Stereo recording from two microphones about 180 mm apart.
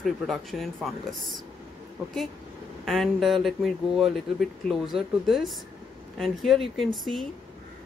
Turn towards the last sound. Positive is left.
turn(degrees=0)  # may be behind; listen again after turning